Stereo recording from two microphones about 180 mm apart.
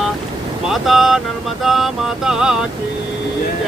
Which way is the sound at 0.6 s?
Centre (ahead or behind).